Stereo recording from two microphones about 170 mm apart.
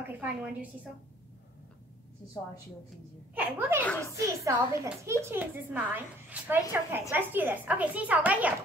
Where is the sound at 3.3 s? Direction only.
10° right (ahead or behind).